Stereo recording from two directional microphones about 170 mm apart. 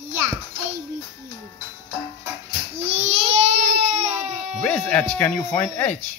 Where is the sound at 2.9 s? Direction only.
40° right (ahead or behind).